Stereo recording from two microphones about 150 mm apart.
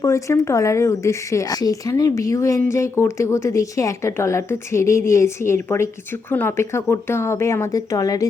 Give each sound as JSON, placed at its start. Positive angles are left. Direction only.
{"t": 0.0, "sound": "a woman's voice", "side_deg": 20}